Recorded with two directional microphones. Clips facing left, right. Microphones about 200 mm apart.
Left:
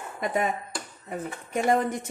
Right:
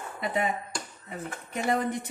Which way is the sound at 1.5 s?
45° left (ahead or behind).